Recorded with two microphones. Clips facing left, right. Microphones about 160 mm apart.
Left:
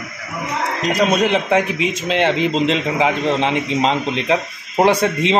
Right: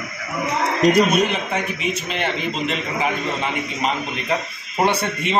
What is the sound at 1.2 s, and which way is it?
A man's voice, 90° left.